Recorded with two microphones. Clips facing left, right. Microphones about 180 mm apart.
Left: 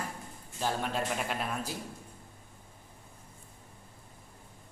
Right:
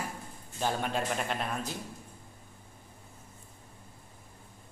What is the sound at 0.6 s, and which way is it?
A man's voice, centre (ahead or behind).